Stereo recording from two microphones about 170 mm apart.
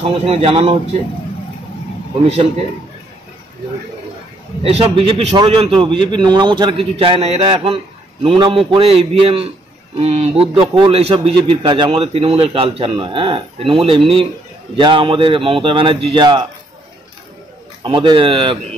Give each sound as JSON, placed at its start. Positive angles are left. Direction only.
{"t": 0.0, "sound": "a man's voice", "side_deg": -35}
{"t": 4.6, "sound": "a man's voice", "side_deg": -35}
{"t": 17.8, "sound": "a man's voice", "side_deg": -30}